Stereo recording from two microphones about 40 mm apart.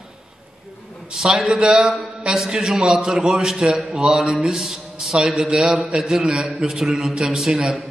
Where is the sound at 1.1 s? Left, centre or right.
Centre.